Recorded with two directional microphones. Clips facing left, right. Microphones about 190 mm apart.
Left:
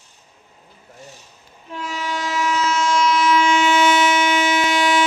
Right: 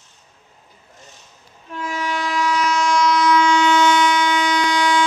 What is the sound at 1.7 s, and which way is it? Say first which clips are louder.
Train: right 2 dB; 15° left (ahead or behind).